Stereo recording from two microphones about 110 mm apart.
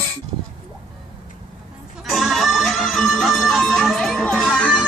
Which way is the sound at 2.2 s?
Centre (ahead or behind).